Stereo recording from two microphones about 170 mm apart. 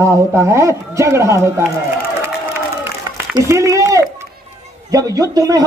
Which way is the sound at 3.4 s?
15° right (ahead or behind).